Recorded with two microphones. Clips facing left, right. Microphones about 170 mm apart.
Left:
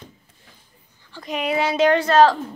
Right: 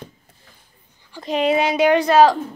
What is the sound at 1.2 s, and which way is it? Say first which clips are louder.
A woman's voice: right 4 dB; 30° right (ahead or behind).